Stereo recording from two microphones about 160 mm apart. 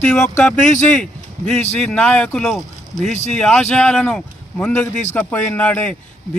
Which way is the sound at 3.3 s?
5° left (ahead or behind).